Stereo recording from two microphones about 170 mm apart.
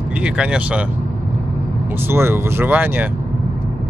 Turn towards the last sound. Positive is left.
turn(degrees=-10)  # may be behind; listen again after turning